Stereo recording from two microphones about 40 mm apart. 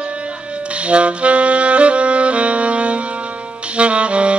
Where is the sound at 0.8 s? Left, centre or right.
Right.